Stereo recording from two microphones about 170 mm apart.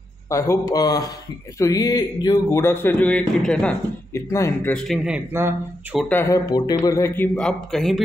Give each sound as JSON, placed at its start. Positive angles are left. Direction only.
{"t": 0.3, "sound": "speech", "side_deg": 20}
{"t": 4.1, "sound": "speech", "side_deg": 15}
{"t": 4.7, "sound": "a man's voice", "side_deg": 0}
{"t": 5.9, "sound": "speech", "side_deg": 10}
{"t": 6.5, "sound": "speech", "side_deg": 25}
{"t": 7.3, "sound": "a man's voice", "side_deg": 5}